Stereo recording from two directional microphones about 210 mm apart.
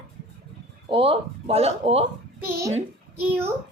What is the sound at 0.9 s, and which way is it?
A woman's voice, 25° right (ahead or behind).